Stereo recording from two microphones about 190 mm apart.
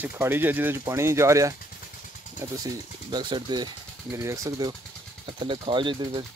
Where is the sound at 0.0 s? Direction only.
10° right (ahead or behind).